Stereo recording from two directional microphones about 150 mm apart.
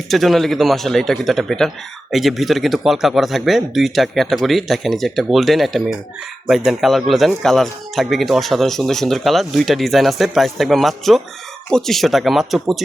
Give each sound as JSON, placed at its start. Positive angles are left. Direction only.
{"t": 0.1, "sound": "speech", "side_deg": 0}